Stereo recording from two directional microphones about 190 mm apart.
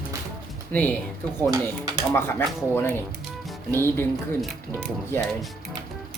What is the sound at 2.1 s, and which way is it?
Speech, 10° left (ahead or behind).